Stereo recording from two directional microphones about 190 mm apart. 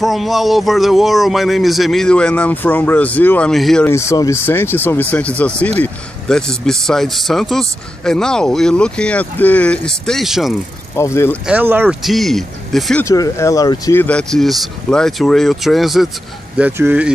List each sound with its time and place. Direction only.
0.0 s speech: centre (ahead or behind)
3.8 s speech: 15° left (ahead or behind); by 10.5 s centre (ahead or behind)
11.0 s speech: 15° left (ahead or behind)
11.4 s speech: 10° right (ahead or behind)
13.0 s speech: 15° left (ahead or behind)
14.0 s speech: 5° left (ahead or behind)